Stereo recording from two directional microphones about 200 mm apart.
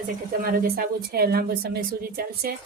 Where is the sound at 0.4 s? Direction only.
45° right (ahead or behind).